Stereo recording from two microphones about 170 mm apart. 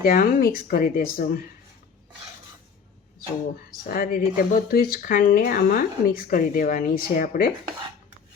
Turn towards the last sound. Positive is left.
turn(degrees=55)  # may be behind; listen again after turning